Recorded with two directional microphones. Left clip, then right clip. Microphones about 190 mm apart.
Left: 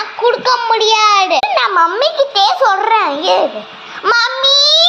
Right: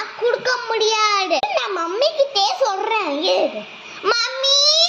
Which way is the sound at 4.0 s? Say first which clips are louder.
Left 7 dB; 35° right (ahead or behind).